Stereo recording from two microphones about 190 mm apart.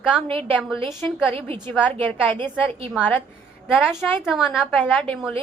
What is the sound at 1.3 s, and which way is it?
Speech, 30° right (ahead or behind).